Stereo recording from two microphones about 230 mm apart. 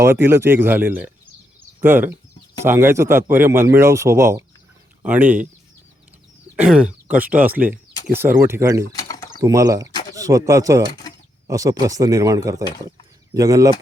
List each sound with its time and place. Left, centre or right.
0.0 s speech: centre
6.6 s speech: centre
8.9 s a sound: centre
9.4 s speech: centre